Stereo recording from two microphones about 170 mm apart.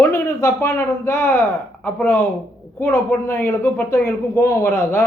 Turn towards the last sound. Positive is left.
turn(degrees=15)  # may be behind; listen again after turning